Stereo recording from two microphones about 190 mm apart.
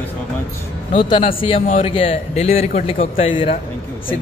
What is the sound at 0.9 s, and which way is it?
A man's voice, 25° left (ahead or behind).